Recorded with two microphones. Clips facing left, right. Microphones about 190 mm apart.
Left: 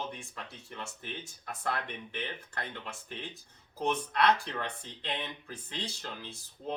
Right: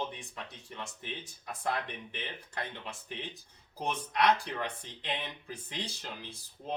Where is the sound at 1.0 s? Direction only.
15° right (ahead or behind).